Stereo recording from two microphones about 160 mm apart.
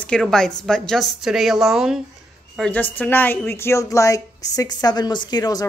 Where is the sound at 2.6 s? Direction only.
10° left (ahead or behind).